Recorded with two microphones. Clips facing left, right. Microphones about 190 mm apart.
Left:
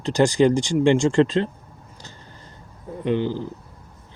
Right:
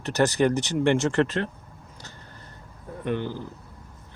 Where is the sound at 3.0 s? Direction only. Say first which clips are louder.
Left 6 dB; 15° left (ahead or behind).